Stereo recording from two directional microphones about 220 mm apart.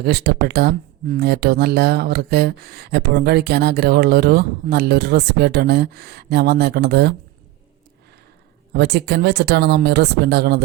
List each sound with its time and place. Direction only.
0.0 s speech: 45° right (ahead or behind)
8.7 s speech: 45° right (ahead or behind)